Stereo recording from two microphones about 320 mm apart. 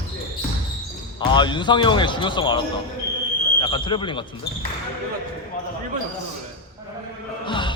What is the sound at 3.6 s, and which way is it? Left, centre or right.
Speech, centre.